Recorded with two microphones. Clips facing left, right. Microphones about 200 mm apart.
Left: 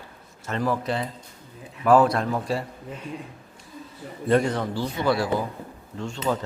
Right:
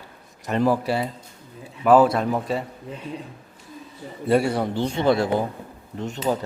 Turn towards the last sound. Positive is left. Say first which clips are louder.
# right 2 dB
turn(degrees=-20)  # may be behind; listen again after turning